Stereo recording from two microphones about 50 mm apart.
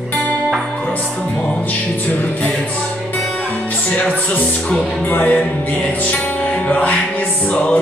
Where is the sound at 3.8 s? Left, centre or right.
Left.